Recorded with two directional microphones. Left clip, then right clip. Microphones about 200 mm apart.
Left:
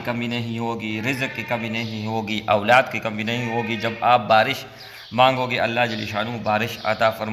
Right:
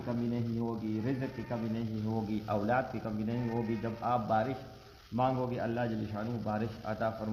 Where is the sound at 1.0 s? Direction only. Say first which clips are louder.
Left 13 dB; 15° left (ahead or behind).